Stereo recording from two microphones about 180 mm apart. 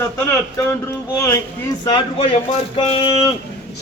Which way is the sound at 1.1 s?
15° left (ahead or behind).